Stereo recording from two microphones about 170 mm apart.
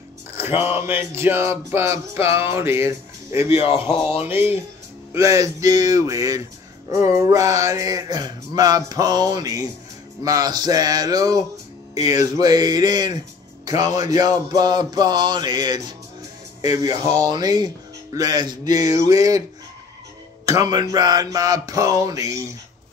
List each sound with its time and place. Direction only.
0.8 s music: 15° right (ahead or behind)
3.4 s speech: 35° left (ahead or behind)
4.3 s music: 10° right (ahead or behind)
5.1 s mantra: 20° right (ahead or behind)
16.8 s mantra: 20° right (ahead or behind)
20.4 s mantra: 20° right (ahead or behind)